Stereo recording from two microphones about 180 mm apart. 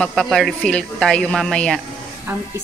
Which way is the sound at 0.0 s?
Centre (ahead or behind).